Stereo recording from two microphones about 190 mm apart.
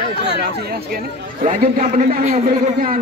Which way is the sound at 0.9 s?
45° right (ahead or behind).